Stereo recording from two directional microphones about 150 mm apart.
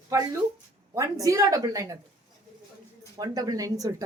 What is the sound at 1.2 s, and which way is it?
Speech, 20° right (ahead or behind).